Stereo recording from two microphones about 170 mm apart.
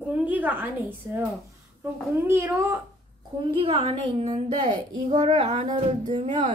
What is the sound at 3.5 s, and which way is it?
A woman's voice, 35° right (ahead or behind).